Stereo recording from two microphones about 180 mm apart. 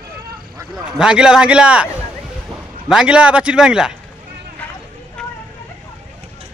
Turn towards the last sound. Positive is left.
turn(degrees=5)  # may be behind; listen again after turning